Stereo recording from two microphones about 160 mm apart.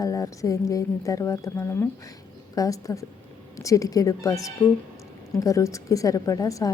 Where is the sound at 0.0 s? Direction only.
20° left (ahead or behind).